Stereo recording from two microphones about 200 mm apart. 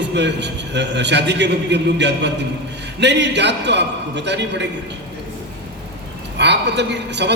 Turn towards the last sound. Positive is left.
turn(degrees=-60)  # may be behind; listen again after turning